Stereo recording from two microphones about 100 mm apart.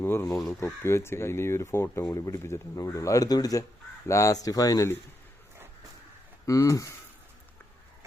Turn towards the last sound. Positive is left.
turn(degrees=35)  # may be behind; listen again after turning